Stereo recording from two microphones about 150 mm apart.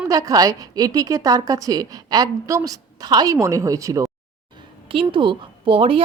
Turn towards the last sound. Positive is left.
turn(degrees=-35)  # may be behind; listen again after turning